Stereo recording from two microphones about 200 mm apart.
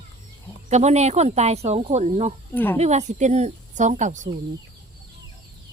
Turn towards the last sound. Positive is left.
turn(degrees=-40)  # may be behind; listen again after turning